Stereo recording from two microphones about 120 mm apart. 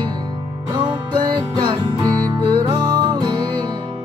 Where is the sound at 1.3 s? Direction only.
40° right (ahead or behind).